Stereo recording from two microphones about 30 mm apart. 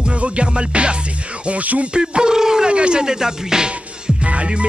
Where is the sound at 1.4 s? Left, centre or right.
Right.